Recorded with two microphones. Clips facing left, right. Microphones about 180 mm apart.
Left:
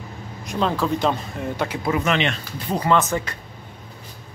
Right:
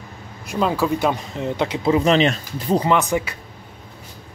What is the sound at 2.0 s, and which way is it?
Speech, 35° right (ahead or behind).